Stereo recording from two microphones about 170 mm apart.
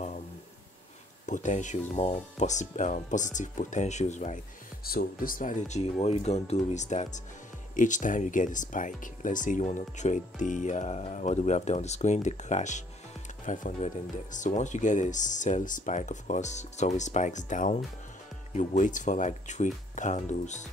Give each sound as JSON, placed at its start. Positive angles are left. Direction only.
{"t": 1.2, "sound": "speech", "side_deg": 45}
{"t": 4.8, "sound": "speech", "side_deg": 60}